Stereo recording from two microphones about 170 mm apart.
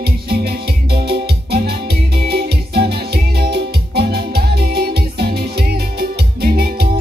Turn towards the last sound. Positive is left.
turn(degrees=-65)  # may be behind; listen again after turning